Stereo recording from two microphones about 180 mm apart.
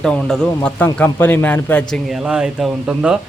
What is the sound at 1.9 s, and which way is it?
Speech, centre (ahead or behind).